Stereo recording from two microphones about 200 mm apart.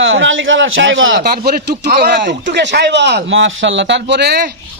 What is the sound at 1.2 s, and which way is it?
A man's voice, 50° right (ahead or behind).